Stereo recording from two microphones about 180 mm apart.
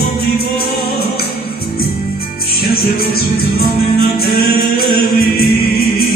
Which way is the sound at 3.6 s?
60° left (ahead or behind).